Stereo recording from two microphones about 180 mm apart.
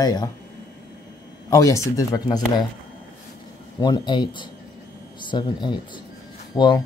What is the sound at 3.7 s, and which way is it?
Speech, 25° left (ahead or behind).